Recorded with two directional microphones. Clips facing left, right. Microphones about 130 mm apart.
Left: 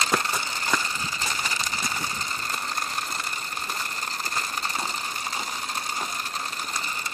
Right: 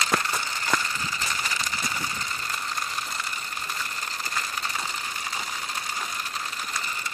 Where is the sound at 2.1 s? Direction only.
35° left (ahead or behind).